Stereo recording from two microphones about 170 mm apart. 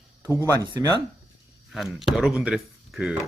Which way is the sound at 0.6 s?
25° right (ahead or behind).